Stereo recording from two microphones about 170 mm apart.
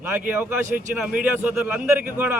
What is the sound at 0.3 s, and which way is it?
Speech, 10° right (ahead or behind).